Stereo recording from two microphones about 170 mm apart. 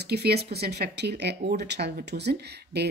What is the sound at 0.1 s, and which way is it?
Speech, 70° right (ahead or behind).